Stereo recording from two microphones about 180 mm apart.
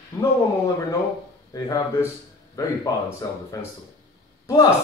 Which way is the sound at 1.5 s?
20° left (ahead or behind).